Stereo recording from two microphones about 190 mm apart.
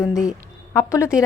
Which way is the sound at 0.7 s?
15° left (ahead or behind).